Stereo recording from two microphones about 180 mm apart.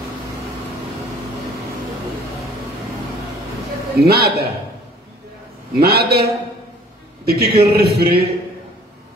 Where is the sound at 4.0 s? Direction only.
65° right (ahead or behind).